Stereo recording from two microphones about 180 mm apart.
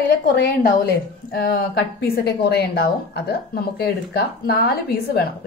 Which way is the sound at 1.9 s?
65° left (ahead or behind).